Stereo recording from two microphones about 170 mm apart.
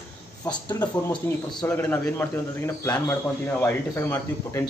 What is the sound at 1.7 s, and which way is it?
Speech, 10° left (ahead or behind).